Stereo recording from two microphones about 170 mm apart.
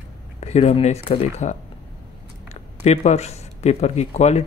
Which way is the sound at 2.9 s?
40° left (ahead or behind).